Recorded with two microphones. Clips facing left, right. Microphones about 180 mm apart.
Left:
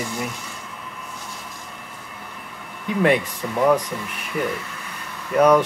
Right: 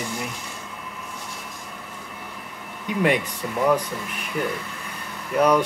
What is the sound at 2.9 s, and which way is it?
Speech, 5° right (ahead or behind).